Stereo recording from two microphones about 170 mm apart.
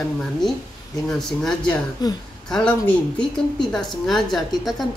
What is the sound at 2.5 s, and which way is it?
A woman's voice, 5° left (ahead or behind).